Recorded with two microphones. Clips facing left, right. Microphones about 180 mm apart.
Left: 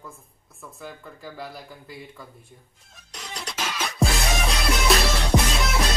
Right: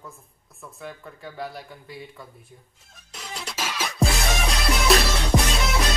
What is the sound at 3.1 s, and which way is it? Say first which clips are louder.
Music: even; centre (ahead or behind).